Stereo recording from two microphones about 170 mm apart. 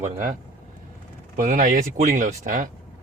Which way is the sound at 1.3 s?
50° right (ahead or behind).